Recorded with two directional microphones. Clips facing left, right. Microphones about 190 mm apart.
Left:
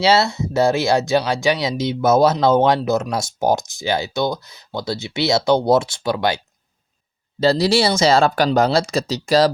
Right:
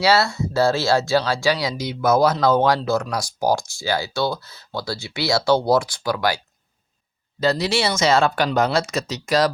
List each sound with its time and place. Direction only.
0.0 s speech: 20° left (ahead or behind)